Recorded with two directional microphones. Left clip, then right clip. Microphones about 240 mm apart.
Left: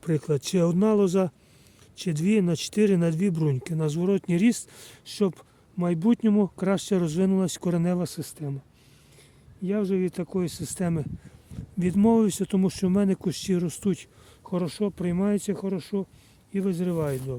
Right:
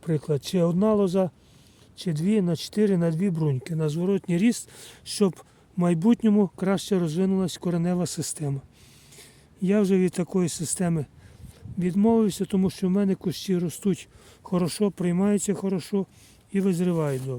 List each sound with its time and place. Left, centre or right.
0.0 s speech: centre
9.6 s speech: centre
14.5 s speech: centre